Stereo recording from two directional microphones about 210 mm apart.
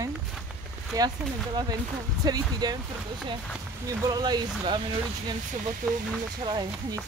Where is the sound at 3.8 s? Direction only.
15° right (ahead or behind).